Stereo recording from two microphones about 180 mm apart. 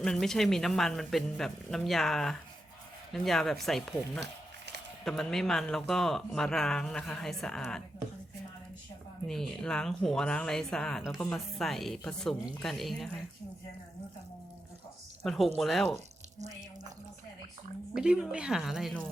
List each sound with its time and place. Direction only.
0.0 s speech: centre (ahead or behind)
4.2 s a sound: 70° right (ahead or behind)
5.0 s speech: 5° left (ahead or behind)
9.2 s speech: centre (ahead or behind)
15.2 s speech: centre (ahead or behind)
17.9 s speech: 5° right (ahead or behind)